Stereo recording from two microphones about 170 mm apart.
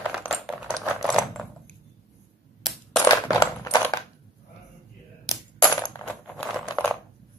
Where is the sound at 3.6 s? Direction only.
20° left (ahead or behind).